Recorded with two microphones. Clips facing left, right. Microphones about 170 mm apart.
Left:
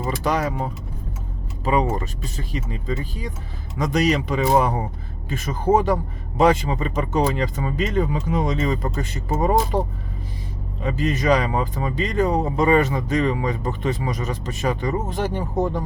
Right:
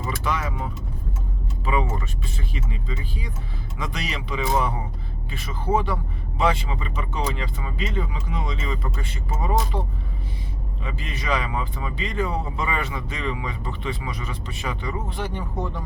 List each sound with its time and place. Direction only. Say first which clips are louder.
0.2 s speech: left 7 dB; 40° left (ahead or behind)
10.8 s speech: left 9 dB; 40° left (ahead or behind)